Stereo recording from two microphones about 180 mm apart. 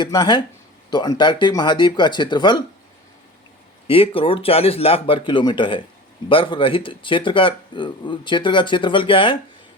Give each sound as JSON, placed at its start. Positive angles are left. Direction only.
{"t": 0.0, "sound": "speech", "side_deg": 25}
{"t": 3.8, "sound": "speech", "side_deg": 30}